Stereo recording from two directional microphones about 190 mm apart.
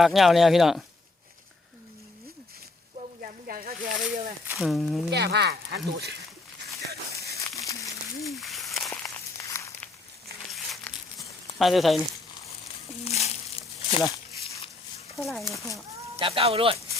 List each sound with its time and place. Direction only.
0.0 s speech: centre (ahead or behind)
3.2 s snake: 50° right (ahead or behind)
4.6 s speech: centre (ahead or behind)
5.1 s speech: 60° right (ahead or behind)
7.3 s a sound: 15° left (ahead or behind)
8.2 s a sound: centre (ahead or behind)
8.9 s walk: 15° left (ahead or behind)
10.5 s crumpling: centre (ahead or behind)
11.5 s speech: centre (ahead or behind)
13.1 s crumpling: 35° left (ahead or behind)
15.1 s speech: centre (ahead or behind)
16.1 s speech: 30° right (ahead or behind)